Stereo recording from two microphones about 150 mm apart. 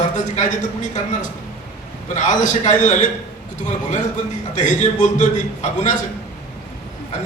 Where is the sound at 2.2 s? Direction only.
55° left (ahead or behind).